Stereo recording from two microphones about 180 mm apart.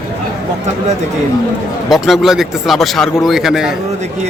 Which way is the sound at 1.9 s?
Centre (ahead or behind).